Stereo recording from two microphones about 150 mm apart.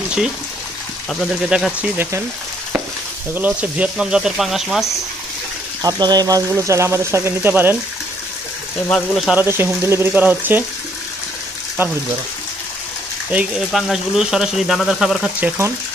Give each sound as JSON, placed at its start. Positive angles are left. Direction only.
{"t": 1.2, "sound": "speech", "side_deg": -5}
{"t": 3.3, "sound": "speech", "side_deg": -10}
{"t": 5.8, "sound": "speech", "side_deg": -25}
{"t": 8.9, "sound": "speech", "side_deg": 0}
{"t": 9.4, "sound": "speech", "side_deg": -15}
{"t": 11.8, "sound": "speech", "side_deg": -15}
{"t": 13.3, "sound": "speech", "side_deg": -5}